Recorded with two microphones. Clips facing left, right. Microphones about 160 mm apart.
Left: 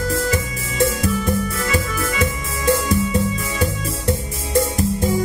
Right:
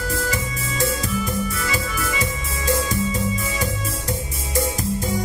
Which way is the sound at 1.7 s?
60° left (ahead or behind).